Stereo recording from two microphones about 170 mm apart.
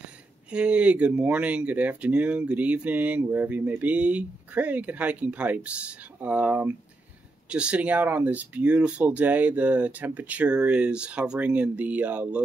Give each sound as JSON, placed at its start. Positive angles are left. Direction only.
{"t": 0.5, "sound": "speech", "side_deg": -5}